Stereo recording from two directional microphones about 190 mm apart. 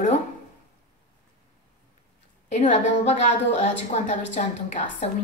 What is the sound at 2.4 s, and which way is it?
A woman's voice, 35° left (ahead or behind).